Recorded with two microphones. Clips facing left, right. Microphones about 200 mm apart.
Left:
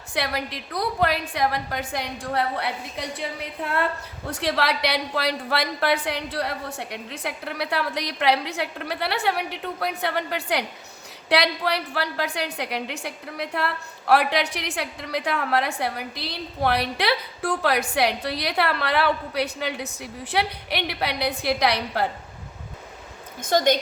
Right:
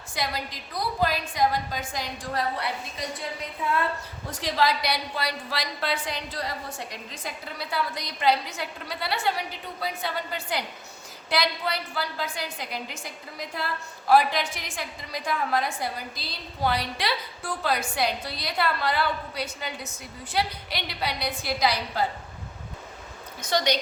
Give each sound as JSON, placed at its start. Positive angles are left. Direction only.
{"t": 0.1, "sound": "a woman's voice", "side_deg": 65}
{"t": 23.4, "sound": "a woman's voice", "side_deg": 50}